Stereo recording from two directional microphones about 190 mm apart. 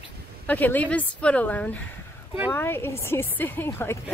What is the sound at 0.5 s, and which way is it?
Speech, 10° left (ahead or behind).